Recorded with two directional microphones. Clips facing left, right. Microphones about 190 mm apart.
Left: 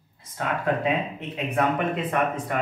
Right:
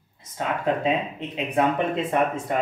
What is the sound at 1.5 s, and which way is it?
Speech, 25° right (ahead or behind).